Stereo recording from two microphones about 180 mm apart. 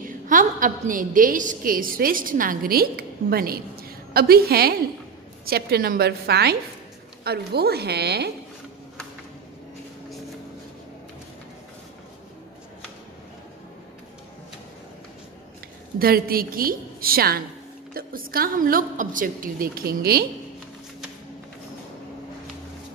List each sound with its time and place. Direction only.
0.0 s a woman's voice: 45° right (ahead or behind); by 8.3 s 65° right (ahead or behind)
16.0 s a woman's voice: 55° right (ahead or behind)